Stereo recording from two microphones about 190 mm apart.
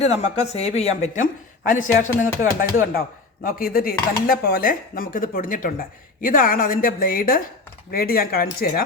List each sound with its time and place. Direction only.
0.0 s speech: 35° left (ahead or behind); by 8.8 s 55° left (ahead or behind)